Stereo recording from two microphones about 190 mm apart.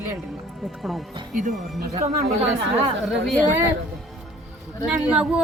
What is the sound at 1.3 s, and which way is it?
Speech, 40° right (ahead or behind).